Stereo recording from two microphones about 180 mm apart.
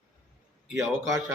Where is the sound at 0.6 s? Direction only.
15° right (ahead or behind).